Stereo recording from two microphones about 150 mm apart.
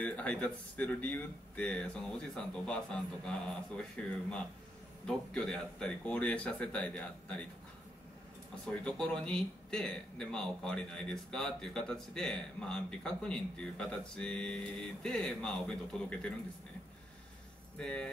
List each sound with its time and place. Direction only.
0.0 s speech: 10° left (ahead or behind)
5.0 s speech: 5° left (ahead or behind)
8.6 s a man's voice: 5° left (ahead or behind)
17.7 s a man's voice: 5° left (ahead or behind)